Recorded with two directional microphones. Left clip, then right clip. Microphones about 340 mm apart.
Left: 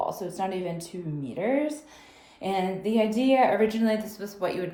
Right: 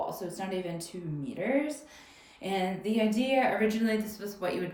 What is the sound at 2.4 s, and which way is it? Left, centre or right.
A woman's voice, centre.